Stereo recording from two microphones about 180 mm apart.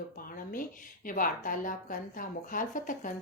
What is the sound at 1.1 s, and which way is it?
A woman's voice, 50° left (ahead or behind).